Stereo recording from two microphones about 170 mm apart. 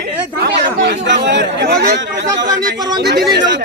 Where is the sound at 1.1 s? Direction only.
90° right.